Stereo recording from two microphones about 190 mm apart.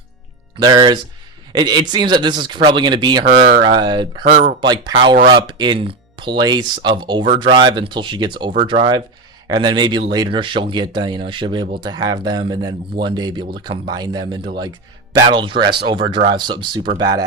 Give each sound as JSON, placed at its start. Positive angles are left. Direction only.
{"t": 0.5, "sound": "speech", "side_deg": -25}
{"t": 4.2, "sound": "speech", "side_deg": -45}
{"t": 4.6, "sound": "speech", "side_deg": -20}